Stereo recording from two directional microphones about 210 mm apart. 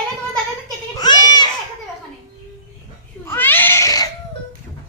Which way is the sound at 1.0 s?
20° left (ahead or behind).